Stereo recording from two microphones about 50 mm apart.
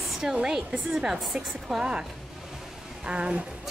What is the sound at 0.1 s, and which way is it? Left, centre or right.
Speech, centre.